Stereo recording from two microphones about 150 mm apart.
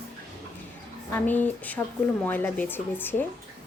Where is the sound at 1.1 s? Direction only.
10° left (ahead or behind).